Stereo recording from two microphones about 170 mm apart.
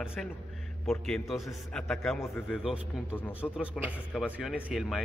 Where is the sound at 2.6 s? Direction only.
5° right (ahead or behind).